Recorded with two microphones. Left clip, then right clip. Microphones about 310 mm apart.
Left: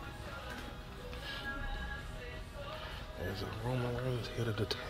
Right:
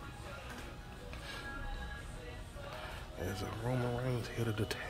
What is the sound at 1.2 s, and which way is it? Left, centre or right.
Music, centre.